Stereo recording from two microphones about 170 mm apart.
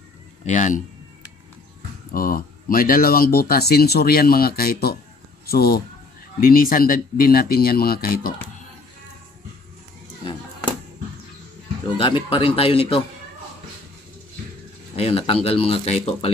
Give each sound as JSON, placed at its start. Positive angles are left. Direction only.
{"t": 0.5, "sound": "speech", "side_deg": 50}
{"t": 2.1, "sound": "speech", "side_deg": 55}
{"t": 12.0, "sound": "speech", "side_deg": 30}
{"t": 15.0, "sound": "speech", "side_deg": 35}